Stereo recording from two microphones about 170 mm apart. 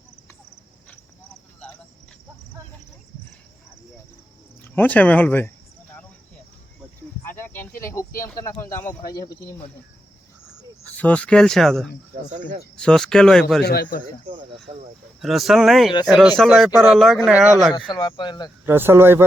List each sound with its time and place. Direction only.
4.7 s speech: 10° left (ahead or behind)
7.3 s cricket: 15° left (ahead or behind)
7.8 s a sound: 15° left (ahead or behind)
8.2 s speech: 20° left (ahead or behind)
10.8 s speech: 10° left (ahead or behind)
12.3 s speech: 50° right (ahead or behind)
12.7 s speech: 5° left (ahead or behind)
13.7 s a man's voice: 60° left (ahead or behind)
14.7 s speech: 45° right (ahead or behind)
15.2 s speech: centre (ahead or behind)
17.7 s speech: 30° left (ahead or behind)
18.6 s speech: 15° right (ahead or behind)